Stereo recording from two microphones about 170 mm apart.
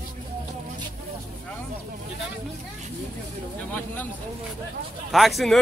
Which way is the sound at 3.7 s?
10° left (ahead or behind).